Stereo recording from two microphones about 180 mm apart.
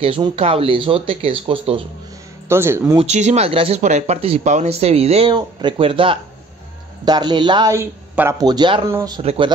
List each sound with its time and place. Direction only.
0.0 s speech: 30° right (ahead or behind)
2.4 s speech: 15° right (ahead or behind)
3.0 s speech: 40° right (ahead or behind); by 9.2 s 20° right (ahead or behind)
9.2 s speech: 35° right (ahead or behind)